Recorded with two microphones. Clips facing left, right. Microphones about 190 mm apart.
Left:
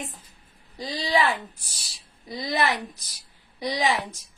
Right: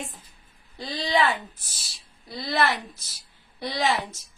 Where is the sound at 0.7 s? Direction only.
10° left (ahead or behind).